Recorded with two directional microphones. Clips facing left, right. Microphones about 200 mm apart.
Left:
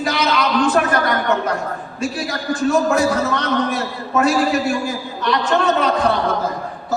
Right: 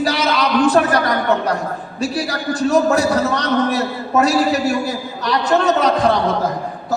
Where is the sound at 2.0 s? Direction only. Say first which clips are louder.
Right 3 dB; 40° right (ahead or behind).